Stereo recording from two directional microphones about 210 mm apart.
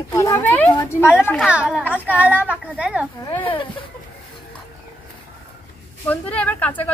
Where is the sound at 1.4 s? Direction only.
5° right (ahead or behind).